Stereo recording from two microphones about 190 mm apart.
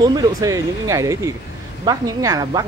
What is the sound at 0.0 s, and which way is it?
A woman's voice, 20° right (ahead or behind).